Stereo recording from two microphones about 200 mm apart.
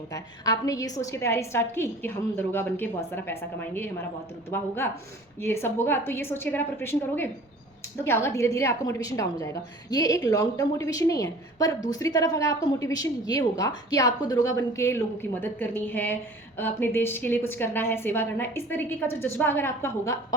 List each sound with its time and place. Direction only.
0.1 s a woman's voice: 15° left (ahead or behind)